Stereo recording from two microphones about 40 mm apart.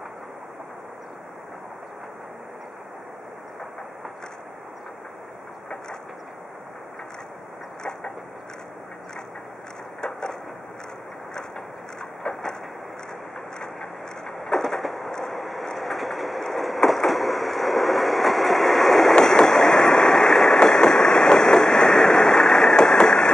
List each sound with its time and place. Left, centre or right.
13.6 s a sound: centre
15.1 s train: centre
19.2 s vehicle: centre